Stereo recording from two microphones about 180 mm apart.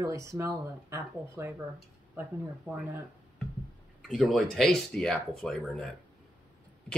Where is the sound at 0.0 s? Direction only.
15° right (ahead or behind).